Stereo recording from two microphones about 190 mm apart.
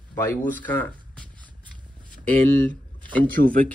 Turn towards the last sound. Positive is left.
turn(degrees=-45)  # may be behind; listen again after turning